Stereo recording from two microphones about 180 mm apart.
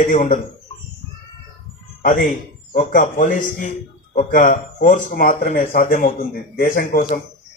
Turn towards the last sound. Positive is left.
turn(degrees=50)  # may be behind; listen again after turning